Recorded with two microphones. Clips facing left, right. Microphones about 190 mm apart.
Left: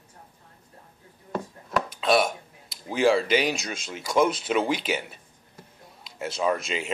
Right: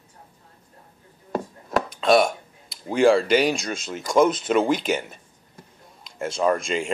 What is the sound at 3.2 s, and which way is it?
Speech, 45° right (ahead or behind).